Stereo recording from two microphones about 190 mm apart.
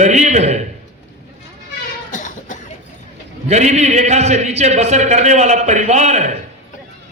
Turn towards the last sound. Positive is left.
turn(degrees=-35)  # may be behind; listen again after turning